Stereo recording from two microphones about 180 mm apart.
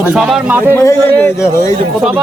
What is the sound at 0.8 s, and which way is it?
Speech, 15° left (ahead or behind).